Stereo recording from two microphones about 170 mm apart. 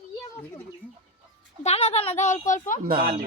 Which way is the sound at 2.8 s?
60° right (ahead or behind).